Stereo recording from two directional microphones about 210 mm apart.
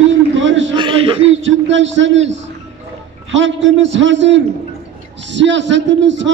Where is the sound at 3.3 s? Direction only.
60° right (ahead or behind).